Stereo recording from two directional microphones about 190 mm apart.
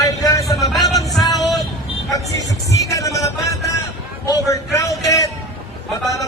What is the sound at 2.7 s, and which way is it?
A man's voice, 15° left (ahead or behind).